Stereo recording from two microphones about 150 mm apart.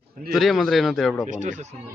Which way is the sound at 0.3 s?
Centre (ahead or behind).